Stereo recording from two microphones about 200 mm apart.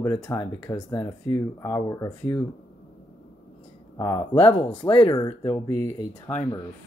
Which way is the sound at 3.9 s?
20° left (ahead or behind).